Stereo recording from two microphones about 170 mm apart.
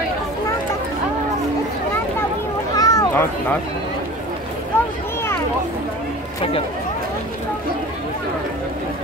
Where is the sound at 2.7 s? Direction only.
20° left (ahead or behind).